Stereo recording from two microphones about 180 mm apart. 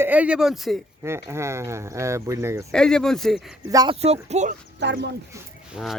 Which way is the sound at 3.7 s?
20° right (ahead or behind).